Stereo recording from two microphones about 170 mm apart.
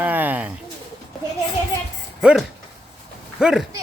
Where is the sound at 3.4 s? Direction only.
5° right (ahead or behind).